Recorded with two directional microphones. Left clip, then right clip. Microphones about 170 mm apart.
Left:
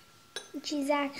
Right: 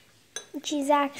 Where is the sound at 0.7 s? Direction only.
20° right (ahead or behind).